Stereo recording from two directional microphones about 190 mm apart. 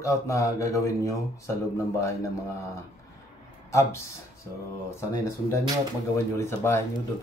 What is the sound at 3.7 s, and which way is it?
Speech, 15° left (ahead or behind).